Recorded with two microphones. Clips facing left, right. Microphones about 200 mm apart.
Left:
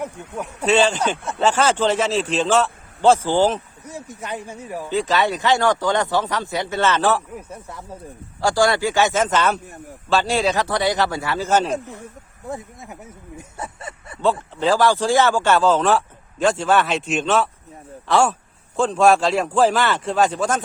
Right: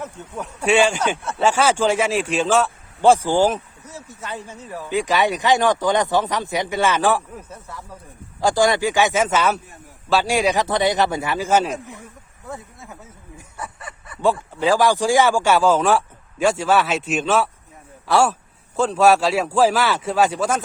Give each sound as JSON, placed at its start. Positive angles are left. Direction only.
{"t": 0.0, "sound": "speech", "side_deg": 10}
{"t": 0.6, "sound": "speech", "side_deg": -10}
{"t": 3.8, "sound": "speech", "side_deg": 15}
{"t": 4.9, "sound": "speech", "side_deg": -15}
{"t": 7.3, "sound": "speech", "side_deg": 15}
{"t": 8.4, "sound": "speech", "side_deg": -15}
{"t": 12.5, "sound": "speech", "side_deg": 15}
{"t": 13.6, "sound": "a sound", "side_deg": 25}
{"t": 14.6, "sound": "speech", "side_deg": -10}